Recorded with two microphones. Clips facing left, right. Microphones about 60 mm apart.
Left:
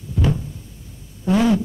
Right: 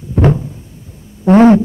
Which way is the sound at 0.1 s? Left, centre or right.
Right.